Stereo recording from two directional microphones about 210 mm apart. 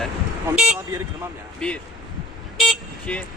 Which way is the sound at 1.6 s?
5° left (ahead or behind).